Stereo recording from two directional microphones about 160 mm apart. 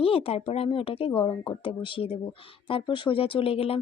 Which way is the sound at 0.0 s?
35° left (ahead or behind).